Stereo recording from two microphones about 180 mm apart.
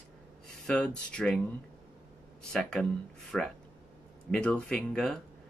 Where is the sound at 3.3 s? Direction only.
5° left (ahead or behind).